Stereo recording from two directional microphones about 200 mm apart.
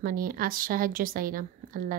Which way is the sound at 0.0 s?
45° right (ahead or behind).